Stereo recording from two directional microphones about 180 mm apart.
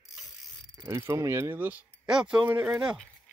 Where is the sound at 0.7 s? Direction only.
15° right (ahead or behind).